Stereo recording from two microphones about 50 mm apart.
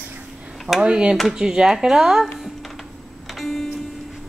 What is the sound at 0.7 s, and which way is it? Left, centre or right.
Speech, centre.